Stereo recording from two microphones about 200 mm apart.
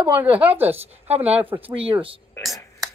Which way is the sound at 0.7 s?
30° right (ahead or behind).